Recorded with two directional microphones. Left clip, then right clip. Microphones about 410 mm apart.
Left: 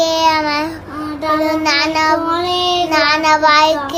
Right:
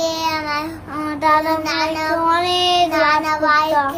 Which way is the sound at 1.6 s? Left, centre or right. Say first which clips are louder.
Left 6 dB; centre.